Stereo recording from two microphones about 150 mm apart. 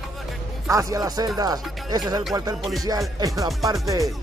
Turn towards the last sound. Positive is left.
turn(degrees=-25)  # may be behind; listen again after turning